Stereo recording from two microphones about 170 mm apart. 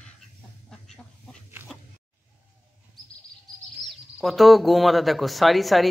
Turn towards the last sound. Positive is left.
turn(degrees=0)  # may be behind; listen again after turning